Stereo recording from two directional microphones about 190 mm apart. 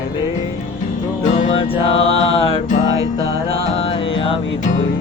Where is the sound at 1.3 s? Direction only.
35° left (ahead or behind).